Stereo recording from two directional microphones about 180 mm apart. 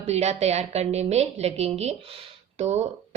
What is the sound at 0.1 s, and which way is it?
A woman's voice, 35° right (ahead or behind).